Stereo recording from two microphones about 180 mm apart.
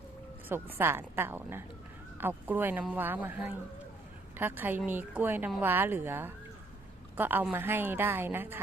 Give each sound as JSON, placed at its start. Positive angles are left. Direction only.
{"t": 0.4, "sound": "a woman's voice", "side_deg": -10}